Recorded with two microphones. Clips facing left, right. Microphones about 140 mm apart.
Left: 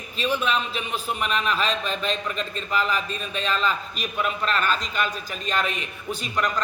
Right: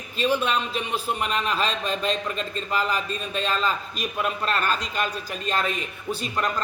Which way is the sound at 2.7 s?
35° right (ahead or behind).